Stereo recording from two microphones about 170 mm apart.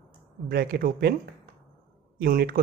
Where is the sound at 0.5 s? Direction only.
65° right (ahead or behind).